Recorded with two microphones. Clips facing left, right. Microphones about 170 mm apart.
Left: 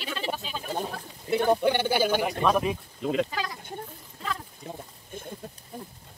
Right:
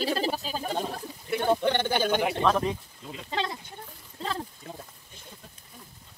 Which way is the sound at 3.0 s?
75° left (ahead or behind).